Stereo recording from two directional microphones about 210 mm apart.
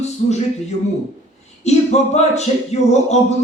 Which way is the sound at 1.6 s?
30° left (ahead or behind).